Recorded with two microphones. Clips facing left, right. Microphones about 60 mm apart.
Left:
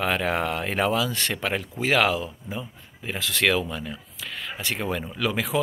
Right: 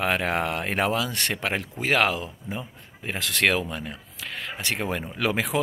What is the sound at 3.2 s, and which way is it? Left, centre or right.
Speech, right.